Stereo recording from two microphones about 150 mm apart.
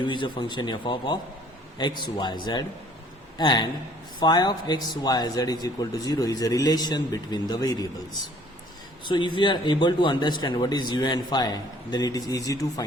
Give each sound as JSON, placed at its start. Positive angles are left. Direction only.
{"t": 0.0, "sound": "speech", "side_deg": 30}
{"t": 9.0, "sound": "speech", "side_deg": 30}